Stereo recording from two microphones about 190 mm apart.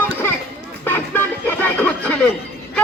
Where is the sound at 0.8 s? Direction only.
10° left (ahead or behind).